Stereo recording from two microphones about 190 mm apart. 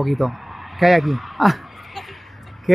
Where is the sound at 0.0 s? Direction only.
Centre (ahead or behind).